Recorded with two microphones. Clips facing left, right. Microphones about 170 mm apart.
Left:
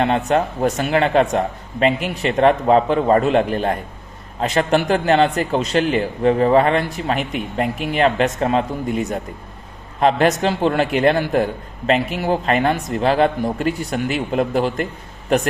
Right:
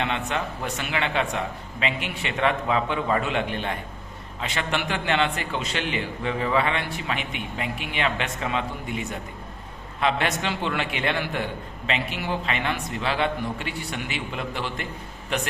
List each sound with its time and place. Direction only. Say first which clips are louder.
0.0 s a man's voice: left 10 dB; 40° left (ahead or behind)